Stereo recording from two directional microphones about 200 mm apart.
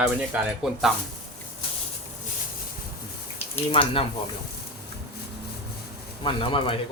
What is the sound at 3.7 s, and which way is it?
Speech, 25° left (ahead or behind).